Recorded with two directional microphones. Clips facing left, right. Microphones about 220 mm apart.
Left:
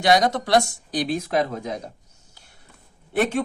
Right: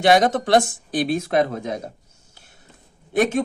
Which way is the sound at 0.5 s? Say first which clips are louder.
Right 2 dB; 55° right (ahead or behind).